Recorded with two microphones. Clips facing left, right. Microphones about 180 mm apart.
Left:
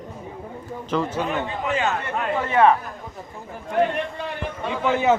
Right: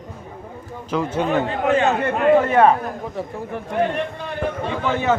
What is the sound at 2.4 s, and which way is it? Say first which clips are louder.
Speech: left 2 dB; 45° right (ahead or behind).